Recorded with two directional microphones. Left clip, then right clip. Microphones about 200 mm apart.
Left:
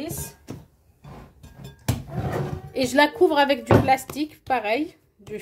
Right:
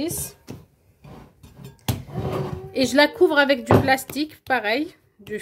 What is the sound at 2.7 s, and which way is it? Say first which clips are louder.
A woman's voice: right 1 dB; 30° right (ahead or behind).